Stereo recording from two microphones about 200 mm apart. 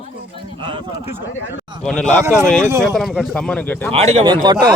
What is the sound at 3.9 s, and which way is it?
Speech, 30° right (ahead or behind).